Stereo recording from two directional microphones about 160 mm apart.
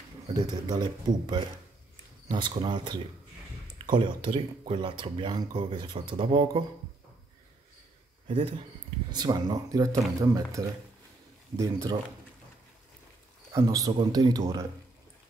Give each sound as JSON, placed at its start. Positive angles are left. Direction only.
{"t": 0.3, "sound": "speech", "side_deg": -25}
{"t": 9.1, "sound": "speech", "side_deg": -25}
{"t": 13.5, "sound": "speech", "side_deg": -20}